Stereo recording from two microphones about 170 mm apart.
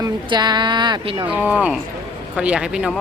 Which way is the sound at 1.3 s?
10° right (ahead or behind).